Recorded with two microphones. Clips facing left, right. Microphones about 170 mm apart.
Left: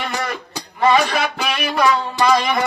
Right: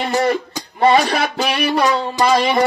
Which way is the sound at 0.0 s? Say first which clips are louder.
Right 8 dB; 30° right (ahead or behind).